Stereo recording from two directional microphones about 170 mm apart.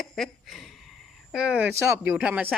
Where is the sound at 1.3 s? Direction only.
5° right (ahead or behind).